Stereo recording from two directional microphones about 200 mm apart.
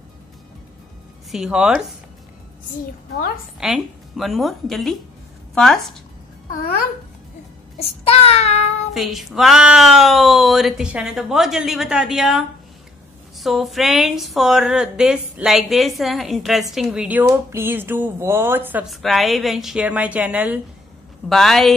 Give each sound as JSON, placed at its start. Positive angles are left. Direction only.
{"t": 1.3, "sound": "a woman's voice", "side_deg": -5}
{"t": 3.5, "sound": "a woman's voice", "side_deg": 0}
{"t": 8.0, "sound": "child singing", "side_deg": 30}
{"t": 8.9, "sound": "a woman's voice", "side_deg": 0}